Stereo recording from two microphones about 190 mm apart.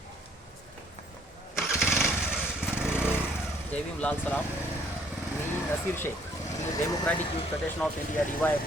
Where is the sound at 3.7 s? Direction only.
5° left (ahead or behind).